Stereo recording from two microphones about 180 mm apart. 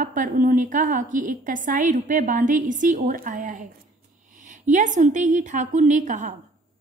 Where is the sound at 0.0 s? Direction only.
45° right (ahead or behind).